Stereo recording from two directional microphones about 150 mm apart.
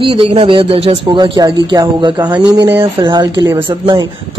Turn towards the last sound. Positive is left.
turn(degrees=-30)  # may be behind; listen again after turning